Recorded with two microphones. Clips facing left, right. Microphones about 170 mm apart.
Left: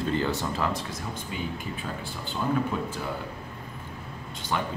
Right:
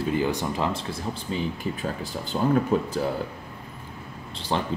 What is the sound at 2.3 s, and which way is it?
Speech, 40° right (ahead or behind).